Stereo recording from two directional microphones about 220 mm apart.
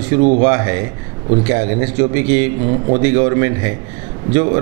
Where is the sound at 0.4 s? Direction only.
15° right (ahead or behind).